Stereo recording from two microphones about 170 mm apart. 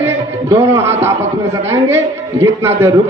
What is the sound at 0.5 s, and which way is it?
Speech, 15° right (ahead or behind).